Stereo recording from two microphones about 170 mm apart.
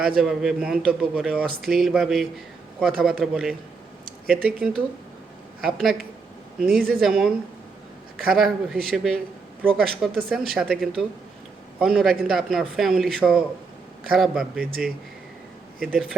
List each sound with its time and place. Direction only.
0.2 s a man's voice: centre (ahead or behind)